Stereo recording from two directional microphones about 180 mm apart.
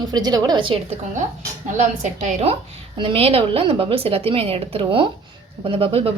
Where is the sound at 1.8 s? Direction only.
40° right (ahead or behind).